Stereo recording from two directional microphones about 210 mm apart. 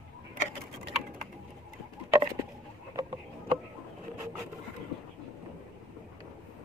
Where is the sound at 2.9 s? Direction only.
20° right (ahead or behind).